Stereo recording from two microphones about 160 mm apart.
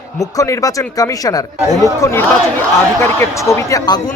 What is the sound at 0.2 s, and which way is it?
Speech, 20° left (ahead or behind).